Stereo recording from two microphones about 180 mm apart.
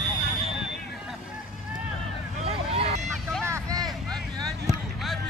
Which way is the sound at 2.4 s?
35° right (ahead or behind).